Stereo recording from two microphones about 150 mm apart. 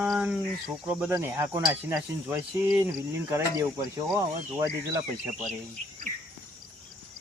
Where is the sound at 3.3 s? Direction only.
20° right (ahead or behind).